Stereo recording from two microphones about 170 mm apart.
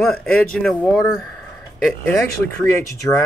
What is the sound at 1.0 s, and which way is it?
Speech, 20° left (ahead or behind).